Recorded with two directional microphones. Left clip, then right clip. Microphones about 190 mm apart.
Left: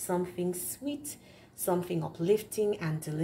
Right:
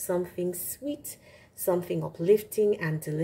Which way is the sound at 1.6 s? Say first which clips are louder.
Right 3 dB; 30° right (ahead or behind).